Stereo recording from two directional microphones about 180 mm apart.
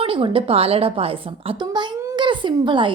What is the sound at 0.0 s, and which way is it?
A woman's voice, 30° right (ahead or behind).